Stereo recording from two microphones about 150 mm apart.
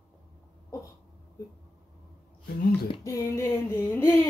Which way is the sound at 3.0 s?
20° left (ahead or behind).